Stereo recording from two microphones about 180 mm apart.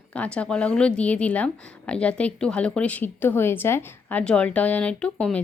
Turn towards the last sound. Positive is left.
turn(degrees=5)  # may be behind; listen again after turning